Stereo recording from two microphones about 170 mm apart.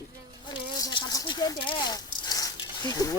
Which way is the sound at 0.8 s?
25° left (ahead or behind).